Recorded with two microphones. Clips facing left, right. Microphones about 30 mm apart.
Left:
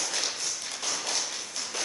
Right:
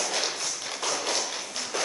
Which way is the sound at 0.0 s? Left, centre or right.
Centre.